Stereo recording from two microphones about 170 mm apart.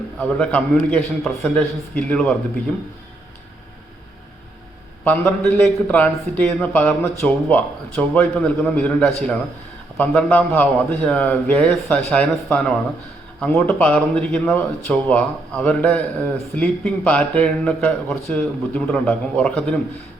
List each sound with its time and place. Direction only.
0.2 s speech: 5° left (ahead or behind)
5.0 s speech: 10° left (ahead or behind)